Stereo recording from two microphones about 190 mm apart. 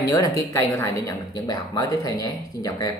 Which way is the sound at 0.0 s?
15° left (ahead or behind).